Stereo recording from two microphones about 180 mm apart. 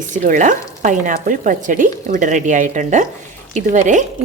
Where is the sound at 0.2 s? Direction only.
45° right (ahead or behind).